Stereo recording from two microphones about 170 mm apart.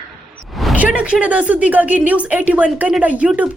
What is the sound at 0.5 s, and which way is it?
Speech, centre (ahead or behind).